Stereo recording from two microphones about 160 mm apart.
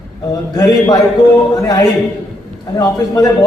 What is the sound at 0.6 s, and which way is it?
A man's voice, 25° left (ahead or behind).